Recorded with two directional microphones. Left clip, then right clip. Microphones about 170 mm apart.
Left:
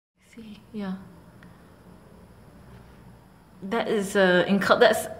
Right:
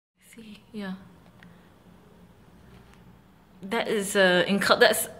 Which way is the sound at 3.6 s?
5° right (ahead or behind).